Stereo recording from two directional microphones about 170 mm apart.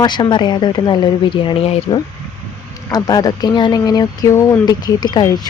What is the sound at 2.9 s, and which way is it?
Speech, 20° left (ahead or behind).